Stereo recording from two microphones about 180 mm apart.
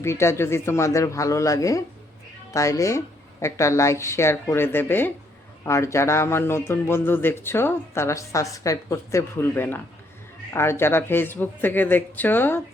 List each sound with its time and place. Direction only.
0.0 s speech: 15° left (ahead or behind)